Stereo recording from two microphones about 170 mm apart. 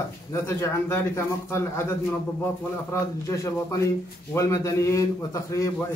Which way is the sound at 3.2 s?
15° left (ahead or behind).